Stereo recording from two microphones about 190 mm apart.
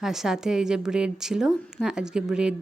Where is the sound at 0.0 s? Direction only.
Centre (ahead or behind).